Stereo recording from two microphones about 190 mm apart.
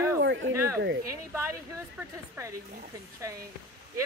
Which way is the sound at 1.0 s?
15° right (ahead or behind).